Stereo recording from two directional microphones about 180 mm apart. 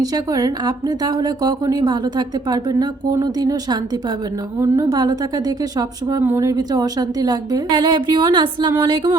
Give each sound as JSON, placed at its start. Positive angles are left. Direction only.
{"t": 0.0, "sound": "a woman's voice", "side_deg": -20}